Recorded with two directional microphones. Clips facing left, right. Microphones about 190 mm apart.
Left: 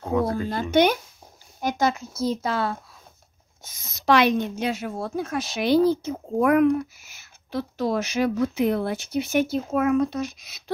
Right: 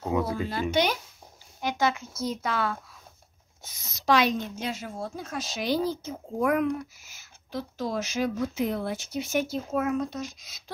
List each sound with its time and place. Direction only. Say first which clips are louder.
0.1 s a sound: left 4 dB; 5° right (ahead or behind)
0.5 s speech: left 8 dB; 50° left (ahead or behind)
1.6 s speech: left 3 dB; 40° left (ahead or behind)
3.6 s a woman's voice: left 4 dB; 50° left (ahead or behind); by 10.6 s 65° left (ahead or behind)